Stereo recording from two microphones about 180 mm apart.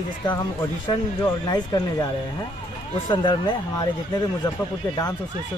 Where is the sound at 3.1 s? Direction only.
25° left (ahead or behind).